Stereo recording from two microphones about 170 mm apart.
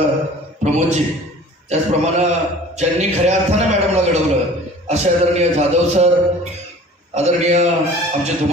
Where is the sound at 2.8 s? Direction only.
40° right (ahead or behind).